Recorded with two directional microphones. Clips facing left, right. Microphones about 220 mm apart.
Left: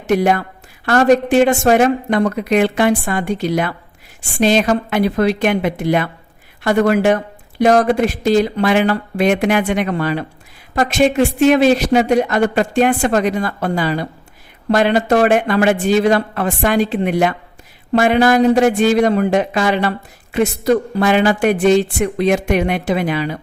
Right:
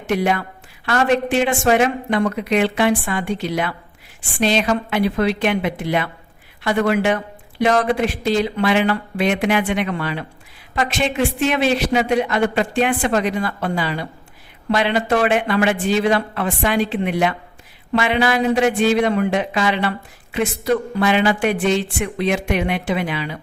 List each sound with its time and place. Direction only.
0.1 s a man's voice: 45° left (ahead or behind)